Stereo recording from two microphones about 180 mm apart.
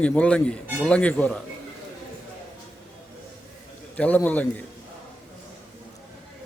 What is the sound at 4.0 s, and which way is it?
Speech, 10° left (ahead or behind).